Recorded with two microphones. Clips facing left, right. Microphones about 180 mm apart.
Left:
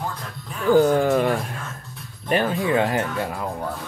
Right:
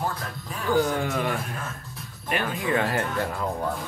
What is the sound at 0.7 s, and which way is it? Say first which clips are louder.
Speech: left 8 dB; 40° left (ahead or behind).